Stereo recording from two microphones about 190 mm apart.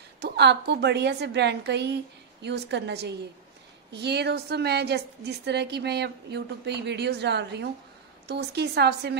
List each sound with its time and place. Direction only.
0.2 s a woman's voice: 60° right (ahead or behind)